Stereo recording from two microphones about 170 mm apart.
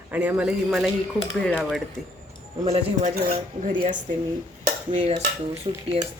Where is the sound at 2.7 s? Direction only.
45° right (ahead or behind).